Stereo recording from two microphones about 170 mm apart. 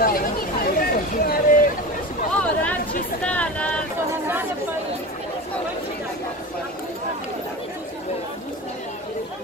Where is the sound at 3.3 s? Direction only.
10° left (ahead or behind).